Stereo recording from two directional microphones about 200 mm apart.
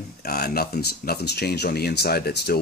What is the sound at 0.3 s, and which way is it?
Speech, 50° left (ahead or behind).